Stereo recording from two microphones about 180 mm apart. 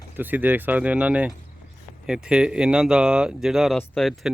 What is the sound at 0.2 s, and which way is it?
Speech, 10° right (ahead or behind).